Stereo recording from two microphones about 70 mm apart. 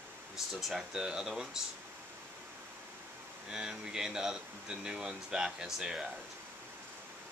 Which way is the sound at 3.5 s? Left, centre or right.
Centre.